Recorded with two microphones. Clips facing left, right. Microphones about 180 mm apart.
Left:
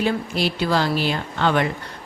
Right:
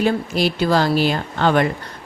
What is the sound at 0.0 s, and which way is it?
Speech, 45° right (ahead or behind).